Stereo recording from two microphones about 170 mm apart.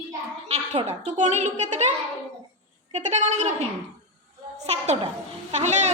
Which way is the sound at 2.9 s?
45° right (ahead or behind).